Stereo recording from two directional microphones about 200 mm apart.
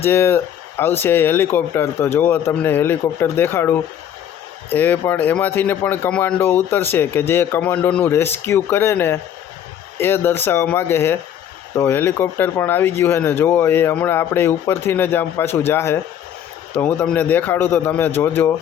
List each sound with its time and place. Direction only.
0.0 s speech: 10° left (ahead or behind)